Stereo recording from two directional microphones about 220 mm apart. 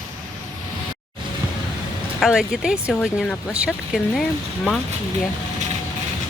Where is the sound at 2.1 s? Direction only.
Centre (ahead or behind).